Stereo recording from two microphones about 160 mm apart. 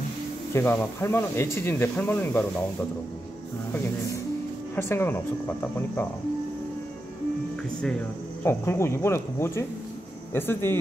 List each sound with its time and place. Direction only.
0.5 s speech: 15° left (ahead or behind)
4.7 s speech: 15° left (ahead or behind)
8.5 s speech: 15° left (ahead or behind)